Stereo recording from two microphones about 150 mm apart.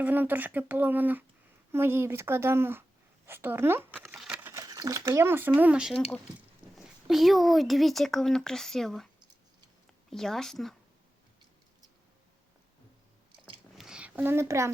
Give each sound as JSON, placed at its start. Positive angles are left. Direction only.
{"t": 0.0, "sound": "speech", "side_deg": -10}
{"t": 4.0, "sound": "speech", "side_deg": -5}
{"t": 10.1, "sound": "speech", "side_deg": 0}
{"t": 13.7, "sound": "a sound", "side_deg": -5}